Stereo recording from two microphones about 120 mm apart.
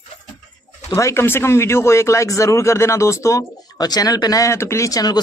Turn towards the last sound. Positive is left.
turn(degrees=30)  # may be behind; listen again after turning